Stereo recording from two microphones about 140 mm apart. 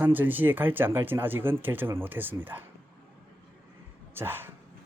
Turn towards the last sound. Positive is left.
turn(degrees=-15)  # may be behind; listen again after turning